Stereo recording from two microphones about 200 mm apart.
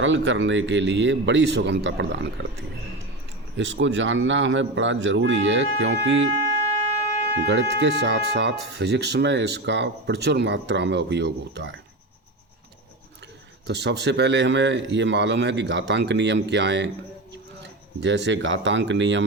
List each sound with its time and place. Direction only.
0.0 s speech: 70° right (ahead or behind)
7.4 s speech: 60° right (ahead or behind)
13.7 s speech: 60° right (ahead or behind)